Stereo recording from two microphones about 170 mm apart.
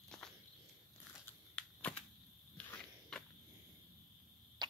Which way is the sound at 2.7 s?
5° left (ahead or behind).